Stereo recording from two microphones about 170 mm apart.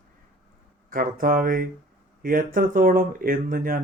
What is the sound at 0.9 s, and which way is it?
Speech, 55° right (ahead or behind).